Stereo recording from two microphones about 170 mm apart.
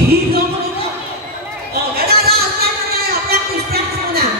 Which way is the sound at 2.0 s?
65° right (ahead or behind).